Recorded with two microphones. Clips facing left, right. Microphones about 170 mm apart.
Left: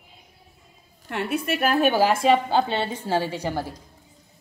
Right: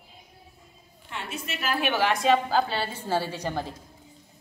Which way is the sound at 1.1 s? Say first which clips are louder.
Left 10 dB; 60° left (ahead or behind).